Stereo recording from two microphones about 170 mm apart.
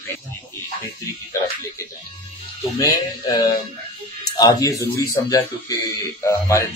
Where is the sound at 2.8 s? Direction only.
20° left (ahead or behind).